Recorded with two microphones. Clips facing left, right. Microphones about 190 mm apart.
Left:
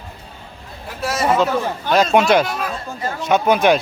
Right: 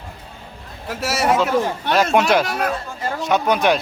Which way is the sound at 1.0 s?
90° right.